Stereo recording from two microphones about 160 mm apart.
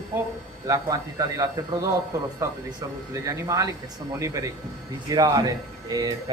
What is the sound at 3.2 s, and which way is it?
A man's voice, 20° right (ahead or behind).